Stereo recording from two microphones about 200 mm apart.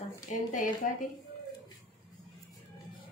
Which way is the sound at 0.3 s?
40° left (ahead or behind).